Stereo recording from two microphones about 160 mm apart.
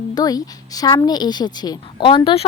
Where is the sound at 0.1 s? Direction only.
25° left (ahead or behind).